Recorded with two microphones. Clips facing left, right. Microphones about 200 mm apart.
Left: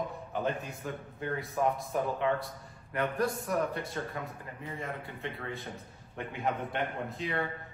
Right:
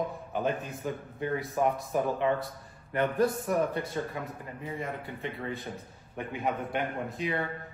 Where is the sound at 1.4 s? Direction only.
Centre (ahead or behind).